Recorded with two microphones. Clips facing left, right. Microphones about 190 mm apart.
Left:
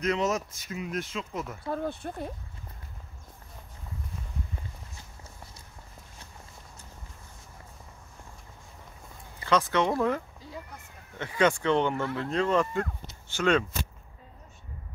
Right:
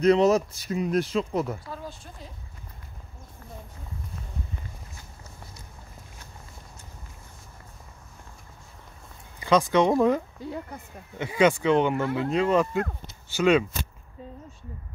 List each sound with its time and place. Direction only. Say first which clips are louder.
0.0 s speech: right 9 dB; 35° right (ahead or behind)
1.7 s speech: left 7 dB; 55° left (ahead or behind)
9.4 s speech: right 5 dB; 15° right (ahead or behind)
10.4 s speech: right 8 dB; 60° right (ahead or behind)
11.1 s speech: right 4 dB; 10° right (ahead or behind)